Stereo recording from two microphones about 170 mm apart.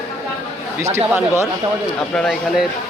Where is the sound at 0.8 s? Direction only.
15° right (ahead or behind).